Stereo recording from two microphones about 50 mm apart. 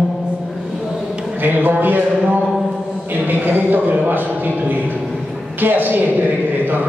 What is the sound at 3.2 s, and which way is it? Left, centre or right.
A man's voice, right.